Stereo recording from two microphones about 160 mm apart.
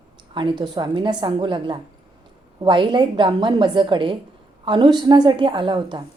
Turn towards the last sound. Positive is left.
turn(degrees=-30)  # may be behind; listen again after turning